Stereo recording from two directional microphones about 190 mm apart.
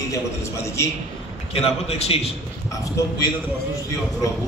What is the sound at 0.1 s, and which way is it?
Speech, 15° left (ahead or behind).